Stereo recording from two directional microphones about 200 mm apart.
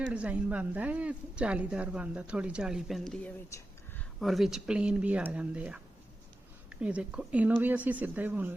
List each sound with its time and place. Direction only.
0.1 s speech: 5° right (ahead or behind)